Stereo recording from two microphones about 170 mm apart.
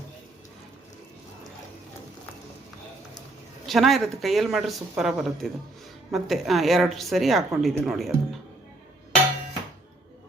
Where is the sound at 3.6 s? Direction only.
Centre (ahead or behind).